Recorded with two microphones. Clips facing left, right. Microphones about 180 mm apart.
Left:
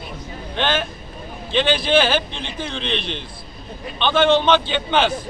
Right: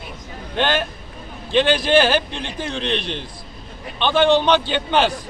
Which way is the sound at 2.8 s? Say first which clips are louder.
Right 2 dB; 45° right (ahead or behind).